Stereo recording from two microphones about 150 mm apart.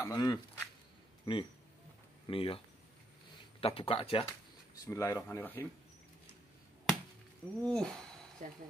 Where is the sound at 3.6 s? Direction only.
40° left (ahead or behind).